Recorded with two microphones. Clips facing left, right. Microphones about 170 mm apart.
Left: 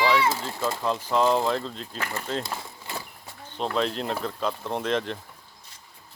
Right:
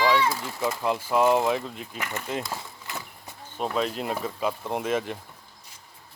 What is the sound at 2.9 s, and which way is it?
Horse, 30° left (ahead or behind).